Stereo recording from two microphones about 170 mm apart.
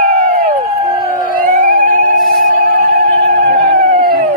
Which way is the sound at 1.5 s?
50° right (ahead or behind).